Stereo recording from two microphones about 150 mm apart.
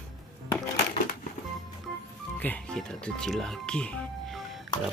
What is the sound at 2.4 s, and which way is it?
Speech, 5° left (ahead or behind).